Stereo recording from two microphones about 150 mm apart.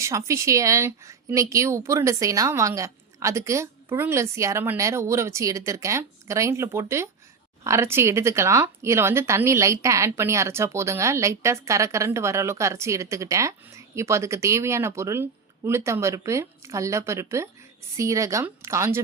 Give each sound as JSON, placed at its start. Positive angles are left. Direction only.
{"t": 0.0, "sound": "speech", "side_deg": -20}